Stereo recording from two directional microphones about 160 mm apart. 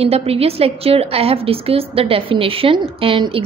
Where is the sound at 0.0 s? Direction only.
40° right (ahead or behind).